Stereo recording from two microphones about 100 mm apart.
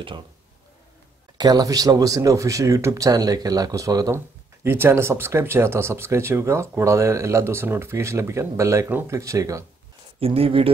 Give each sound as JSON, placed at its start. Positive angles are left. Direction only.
{"t": 1.4, "sound": "speech", "side_deg": -40}
{"t": 4.6, "sound": "speech", "side_deg": -25}
{"t": 8.8, "sound": "speech", "side_deg": -20}
{"t": 9.1, "sound": "speech", "side_deg": -30}
{"t": 10.2, "sound": "speech", "side_deg": -70}